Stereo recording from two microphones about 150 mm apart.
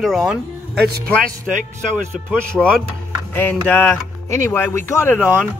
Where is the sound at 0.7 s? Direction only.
90° right.